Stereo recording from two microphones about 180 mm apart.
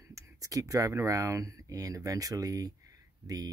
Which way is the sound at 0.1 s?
20° right (ahead or behind).